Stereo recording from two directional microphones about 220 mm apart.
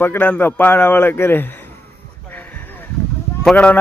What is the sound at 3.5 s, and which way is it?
Speech, 5° left (ahead or behind).